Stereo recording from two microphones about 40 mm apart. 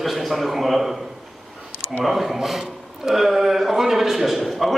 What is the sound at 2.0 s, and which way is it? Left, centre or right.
A man's voice, centre.